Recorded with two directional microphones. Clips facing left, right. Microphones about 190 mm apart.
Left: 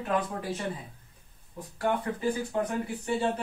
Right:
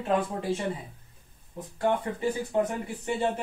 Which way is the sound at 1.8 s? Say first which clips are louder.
Right 2 dB; 20° right (ahead or behind).